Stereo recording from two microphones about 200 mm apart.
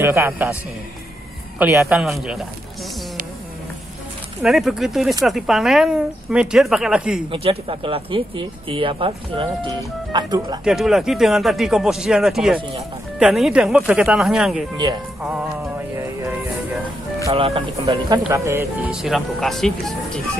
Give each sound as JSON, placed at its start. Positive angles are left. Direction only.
{"t": 0.0, "sound": "speech", "side_deg": -10}
{"t": 1.6, "sound": "speech", "side_deg": -10}
{"t": 4.4, "sound": "speech", "side_deg": 0}
{"t": 7.2, "sound": "speech", "side_deg": -30}
{"t": 10.6, "sound": "speech", "side_deg": 0}
{"t": 16.0, "sound": "music", "side_deg": -15}
{"t": 17.3, "sound": "speech", "side_deg": -25}
{"t": 18.9, "sound": "speech", "side_deg": 0}